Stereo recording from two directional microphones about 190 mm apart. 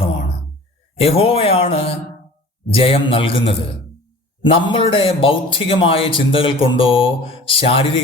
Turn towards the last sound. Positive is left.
turn(degrees=30)  # may be behind; listen again after turning